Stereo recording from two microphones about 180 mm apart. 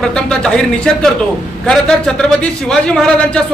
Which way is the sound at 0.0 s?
5° left (ahead or behind).